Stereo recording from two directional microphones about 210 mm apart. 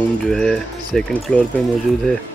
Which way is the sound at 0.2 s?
Centre (ahead or behind).